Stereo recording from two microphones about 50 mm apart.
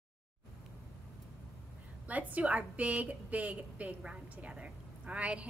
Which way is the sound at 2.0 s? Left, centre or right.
Right.